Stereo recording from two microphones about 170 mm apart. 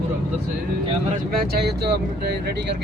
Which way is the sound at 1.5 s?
70° right (ahead or behind).